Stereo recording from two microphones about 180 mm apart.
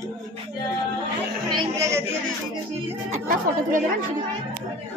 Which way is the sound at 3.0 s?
45° right (ahead or behind).